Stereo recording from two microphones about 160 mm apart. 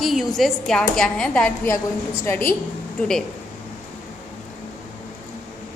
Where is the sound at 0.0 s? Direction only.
Centre (ahead or behind).